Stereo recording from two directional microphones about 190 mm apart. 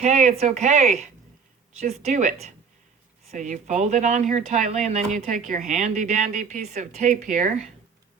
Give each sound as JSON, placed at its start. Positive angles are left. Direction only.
{"t": 0.0, "sound": "speech", "side_deg": -40}